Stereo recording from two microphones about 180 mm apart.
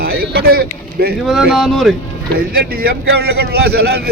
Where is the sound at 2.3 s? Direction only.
55° right (ahead or behind).